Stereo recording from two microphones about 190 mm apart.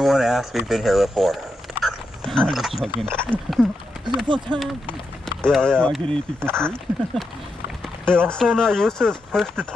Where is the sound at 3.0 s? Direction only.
5° left (ahead or behind).